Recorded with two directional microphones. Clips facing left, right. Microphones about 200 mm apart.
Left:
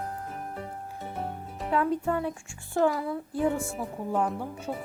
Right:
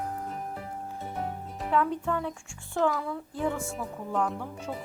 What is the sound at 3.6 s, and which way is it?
Speech, 10° left (ahead or behind).